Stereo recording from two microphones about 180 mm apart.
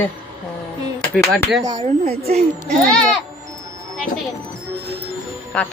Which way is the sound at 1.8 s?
40° right (ahead or behind).